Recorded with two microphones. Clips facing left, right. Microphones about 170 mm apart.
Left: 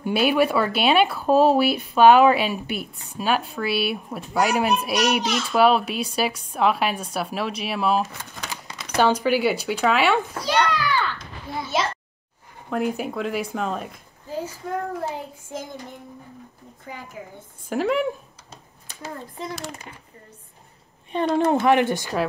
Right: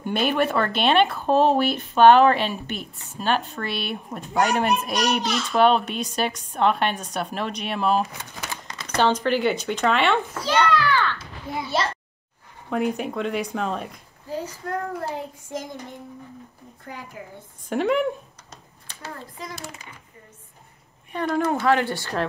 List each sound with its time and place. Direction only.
0.0 s speech: 5° left (ahead or behind)
11.5 s a child's voice: 20° right (ahead or behind)
12.6 s speech: centre (ahead or behind)
16.8 s speech: centre (ahead or behind)
21.1 s a woman's voice: 25° left (ahead or behind)